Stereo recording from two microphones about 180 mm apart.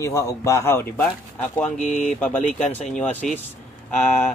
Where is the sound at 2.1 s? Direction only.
10° left (ahead or behind).